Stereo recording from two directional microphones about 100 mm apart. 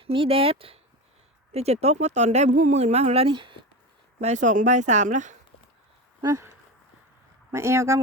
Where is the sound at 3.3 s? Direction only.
55° right (ahead or behind).